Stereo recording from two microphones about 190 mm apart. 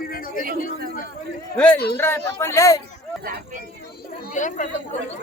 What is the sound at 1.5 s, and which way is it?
A man's voice, 10° left (ahead or behind).